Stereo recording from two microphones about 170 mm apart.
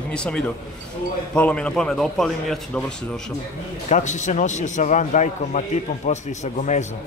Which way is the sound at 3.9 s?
45° left (ahead or behind).